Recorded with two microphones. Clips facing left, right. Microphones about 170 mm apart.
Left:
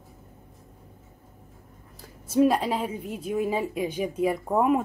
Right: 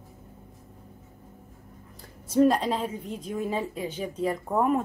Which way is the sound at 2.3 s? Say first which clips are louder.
Even; 5° left (ahead or behind).